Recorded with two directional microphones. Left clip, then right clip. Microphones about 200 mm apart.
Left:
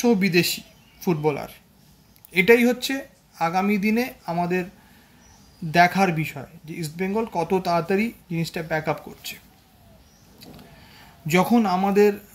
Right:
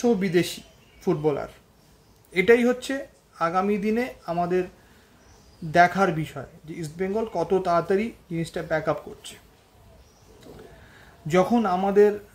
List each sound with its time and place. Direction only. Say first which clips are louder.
0.0 s speech: left 2 dB; 15° right (ahead or behind)
5.7 s speech: left 1 dB; 15° right (ahead or behind)
11.2 s speech: left 1 dB; 15° right (ahead or behind)